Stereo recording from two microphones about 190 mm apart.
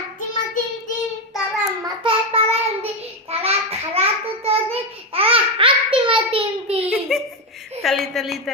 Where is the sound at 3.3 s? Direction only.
30° right (ahead or behind).